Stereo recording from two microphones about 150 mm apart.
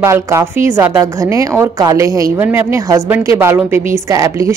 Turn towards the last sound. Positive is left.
turn(degrees=-20)  # may be behind; listen again after turning